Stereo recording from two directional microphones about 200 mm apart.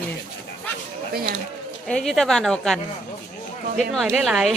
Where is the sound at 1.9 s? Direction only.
5° left (ahead or behind).